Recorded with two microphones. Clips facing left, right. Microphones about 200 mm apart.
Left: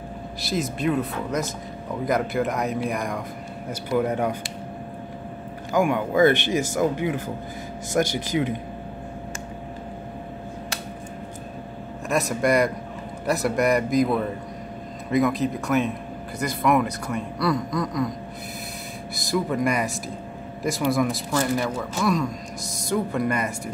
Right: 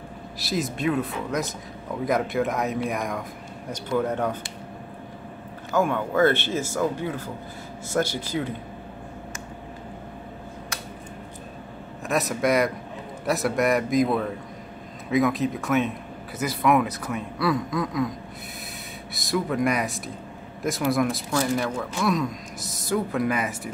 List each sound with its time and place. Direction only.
0.4 s a man's voice: centre (ahead or behind)
4.1 s speech: 10° left (ahead or behind)
5.7 s speech: 15° left (ahead or behind)
12.1 s a man's voice: centre (ahead or behind)
19.1 s a man's voice: centre (ahead or behind)